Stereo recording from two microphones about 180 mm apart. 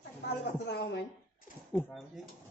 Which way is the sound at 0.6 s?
65° left (ahead or behind).